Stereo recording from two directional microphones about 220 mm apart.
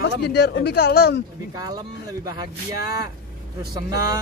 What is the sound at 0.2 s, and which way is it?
Speech, 50° left (ahead or behind).